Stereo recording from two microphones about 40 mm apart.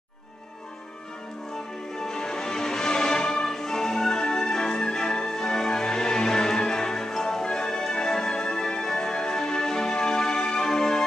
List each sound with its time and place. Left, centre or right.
2.0 s music: centre